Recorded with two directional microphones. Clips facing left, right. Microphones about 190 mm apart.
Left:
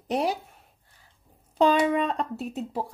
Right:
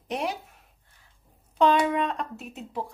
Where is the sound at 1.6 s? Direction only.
35° left (ahead or behind).